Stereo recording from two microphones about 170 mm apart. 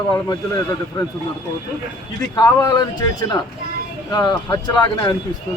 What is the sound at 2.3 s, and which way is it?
Speech, 20° left (ahead or behind).